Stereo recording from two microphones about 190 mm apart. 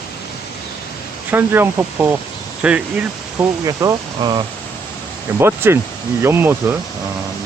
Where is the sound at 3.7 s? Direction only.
20° right (ahead or behind).